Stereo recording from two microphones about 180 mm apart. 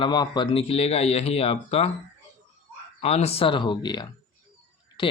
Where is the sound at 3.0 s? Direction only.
35° left (ahead or behind).